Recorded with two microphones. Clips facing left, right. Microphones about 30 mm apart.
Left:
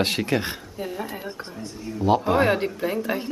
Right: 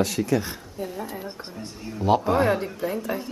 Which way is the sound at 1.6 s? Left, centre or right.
Centre.